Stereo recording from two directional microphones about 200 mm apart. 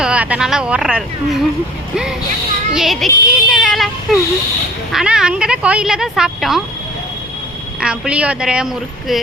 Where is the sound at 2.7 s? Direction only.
Centre (ahead or behind).